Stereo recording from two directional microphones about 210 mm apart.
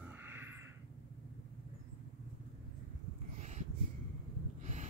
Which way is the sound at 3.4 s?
35° right (ahead or behind).